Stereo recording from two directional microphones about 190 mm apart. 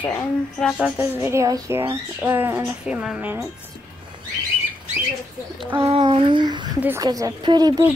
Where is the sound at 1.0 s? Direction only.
15° right (ahead or behind).